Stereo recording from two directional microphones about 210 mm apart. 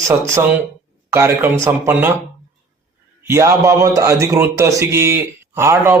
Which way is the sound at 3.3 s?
15° right (ahead or behind).